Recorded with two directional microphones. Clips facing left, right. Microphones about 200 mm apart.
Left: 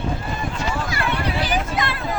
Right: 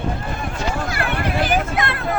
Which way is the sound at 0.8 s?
55° right (ahead or behind).